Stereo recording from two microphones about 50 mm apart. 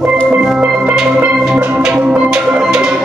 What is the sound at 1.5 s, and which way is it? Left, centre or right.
Music, right.